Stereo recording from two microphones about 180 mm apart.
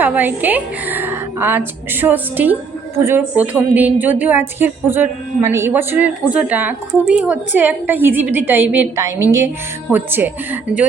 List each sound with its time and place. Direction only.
0.0 s a woman's voice: 10° right (ahead or behind)